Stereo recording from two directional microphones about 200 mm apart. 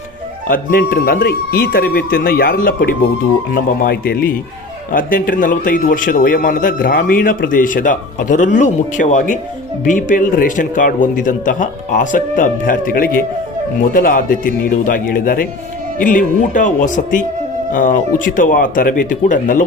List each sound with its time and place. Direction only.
0.4 s a man's voice: 45° left (ahead or behind)